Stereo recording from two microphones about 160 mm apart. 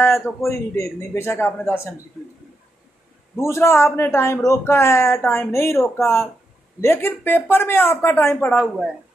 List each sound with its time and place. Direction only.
0.0 s a man's voice: 15° left (ahead or behind)
3.3 s a man's voice: 15° left (ahead or behind)